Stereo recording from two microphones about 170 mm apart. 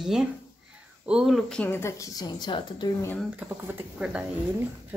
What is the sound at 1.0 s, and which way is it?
A woman's voice, 5° right (ahead or behind).